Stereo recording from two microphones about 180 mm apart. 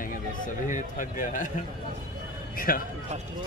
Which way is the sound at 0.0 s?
50° left (ahead or behind).